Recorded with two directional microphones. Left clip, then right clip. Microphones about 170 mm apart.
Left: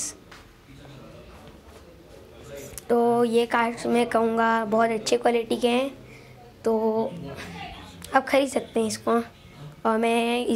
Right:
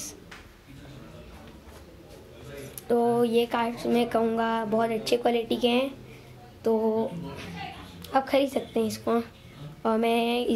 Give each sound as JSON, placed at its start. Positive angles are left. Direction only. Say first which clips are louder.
{"t": 2.7, "sound": "a woman's voice", "louder": "left 3 dB", "side_deg": 5}